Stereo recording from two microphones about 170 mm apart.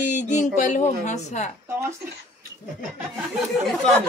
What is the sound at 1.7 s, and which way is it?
Speech, 15° right (ahead or behind).